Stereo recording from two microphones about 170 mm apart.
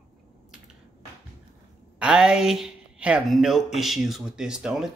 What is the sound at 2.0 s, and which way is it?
A woman's voice, 5° right (ahead or behind).